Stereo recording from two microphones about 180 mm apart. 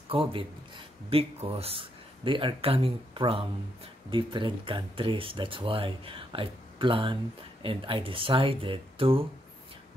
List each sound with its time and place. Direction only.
0.1 s speech: 30° right (ahead or behind)